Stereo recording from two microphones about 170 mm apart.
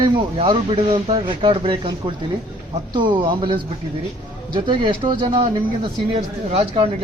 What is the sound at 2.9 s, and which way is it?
A man's voice, 30° right (ahead or behind).